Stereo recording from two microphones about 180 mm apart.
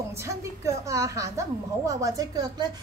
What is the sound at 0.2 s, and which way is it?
A woman's voice, 15° right (ahead or behind).